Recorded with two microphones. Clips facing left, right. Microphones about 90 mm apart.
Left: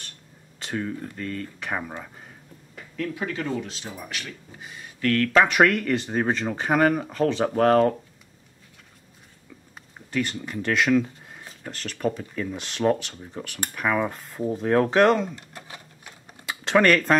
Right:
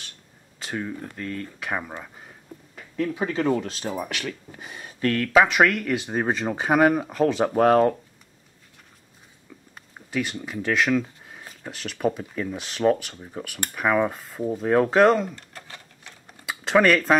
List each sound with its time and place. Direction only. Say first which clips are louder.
0.6 s speech: left 1 dB; 5° right (ahead or behind)
3.0 s speech: right 4 dB; 25° right (ahead or behind); by 3.9 s 50° right (ahead or behind)
3.9 s speech: right 6 dB; 65° right (ahead or behind)
5.0 s speech: right 1 dB; 10° right (ahead or behind)
9.8 s a sound: left 1 dB; centre (ahead or behind)
11.4 s speech: even; 5° right (ahead or behind)
15.5 s a sound: left 1 dB; 10° left (ahead or behind)
16.4 s typing: even; centre (ahead or behind)